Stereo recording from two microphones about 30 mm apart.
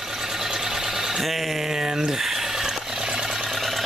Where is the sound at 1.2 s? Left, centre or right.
Centre.